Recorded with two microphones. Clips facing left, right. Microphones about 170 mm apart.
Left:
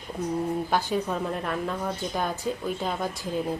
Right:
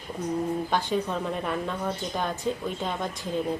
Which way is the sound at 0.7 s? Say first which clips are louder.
Left 1 dB; 5° left (ahead or behind).